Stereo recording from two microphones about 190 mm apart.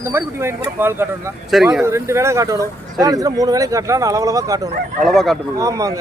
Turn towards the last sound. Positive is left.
turn(degrees=-20)  # may be behind; listen again after turning